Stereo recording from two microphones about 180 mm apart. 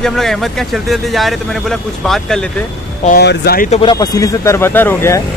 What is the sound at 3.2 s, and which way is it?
Speech, 65° left (ahead or behind).